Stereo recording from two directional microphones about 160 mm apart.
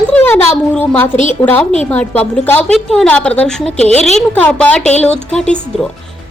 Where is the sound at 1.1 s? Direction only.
50° left (ahead or behind).